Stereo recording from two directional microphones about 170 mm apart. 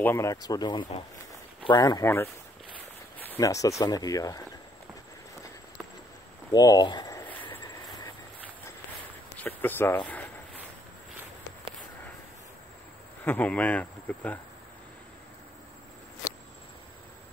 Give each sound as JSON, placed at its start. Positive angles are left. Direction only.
{"t": 0.0, "sound": "speech", "side_deg": 15}
{"t": 3.2, "sound": "speech", "side_deg": 15}
{"t": 6.5, "sound": "a sound", "side_deg": 20}
{"t": 9.4, "sound": "speech", "side_deg": 10}
{"t": 13.2, "sound": "speech", "side_deg": 10}